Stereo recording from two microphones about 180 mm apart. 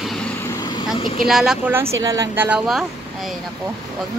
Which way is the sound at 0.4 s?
20° left (ahead or behind).